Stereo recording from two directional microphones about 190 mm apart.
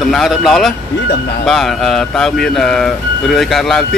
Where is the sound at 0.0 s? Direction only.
Centre (ahead or behind).